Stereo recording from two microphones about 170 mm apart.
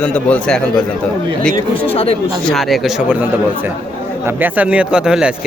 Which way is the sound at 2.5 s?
Centre (ahead or behind).